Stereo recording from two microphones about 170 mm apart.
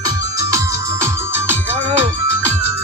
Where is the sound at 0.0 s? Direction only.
20° right (ahead or behind).